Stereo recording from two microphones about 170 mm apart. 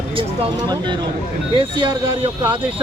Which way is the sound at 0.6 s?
25° right (ahead or behind).